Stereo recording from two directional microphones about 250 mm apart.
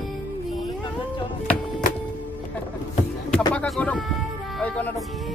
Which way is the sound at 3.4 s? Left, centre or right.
Centre.